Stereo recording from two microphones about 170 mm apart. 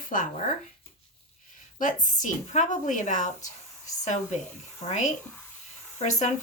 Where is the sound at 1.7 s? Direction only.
50° left (ahead or behind).